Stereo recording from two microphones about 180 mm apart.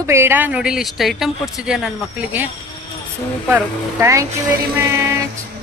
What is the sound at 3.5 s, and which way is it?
Speech, 15° right (ahead or behind).